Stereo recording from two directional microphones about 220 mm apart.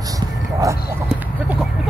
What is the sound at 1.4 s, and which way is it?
Chicken, 5° right (ahead or behind).